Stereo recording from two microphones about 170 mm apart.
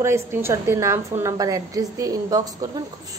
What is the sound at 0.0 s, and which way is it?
A woman's voice, 15° right (ahead or behind).